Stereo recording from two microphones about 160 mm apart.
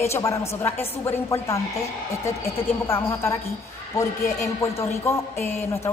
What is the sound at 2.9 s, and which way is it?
A woman's voice, 15° left (ahead or behind).